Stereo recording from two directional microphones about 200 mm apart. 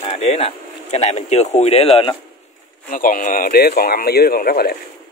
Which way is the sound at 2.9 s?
40° left (ahead or behind).